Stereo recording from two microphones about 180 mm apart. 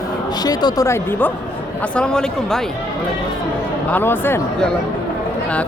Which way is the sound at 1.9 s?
5° left (ahead or behind).